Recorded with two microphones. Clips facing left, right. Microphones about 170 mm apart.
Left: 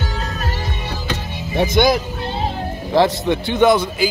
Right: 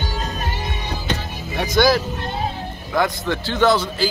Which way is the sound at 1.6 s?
20° left (ahead or behind).